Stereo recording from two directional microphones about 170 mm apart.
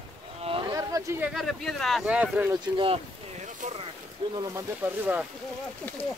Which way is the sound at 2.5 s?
30° right (ahead or behind).